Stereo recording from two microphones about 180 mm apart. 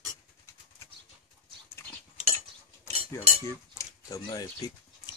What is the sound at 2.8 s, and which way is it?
Speech, 15° left (ahead or behind).